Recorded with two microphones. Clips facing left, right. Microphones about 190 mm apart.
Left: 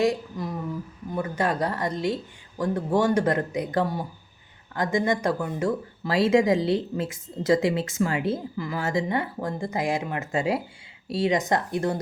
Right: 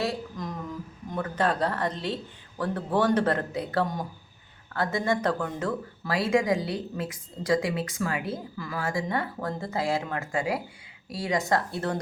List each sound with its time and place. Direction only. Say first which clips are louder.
0.0 s a man's voice: left 6 dB; 10° left (ahead or behind)
6.1 s a woman's voice: left 4 dB; 25° left (ahead or behind)